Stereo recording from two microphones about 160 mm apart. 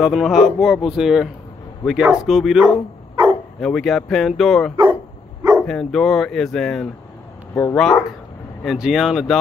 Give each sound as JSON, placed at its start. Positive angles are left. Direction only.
{"t": 0.0, "sound": "speech", "side_deg": -5}
{"t": 3.2, "sound": "bow-wow", "side_deg": -30}
{"t": 3.6, "sound": "speech", "side_deg": 0}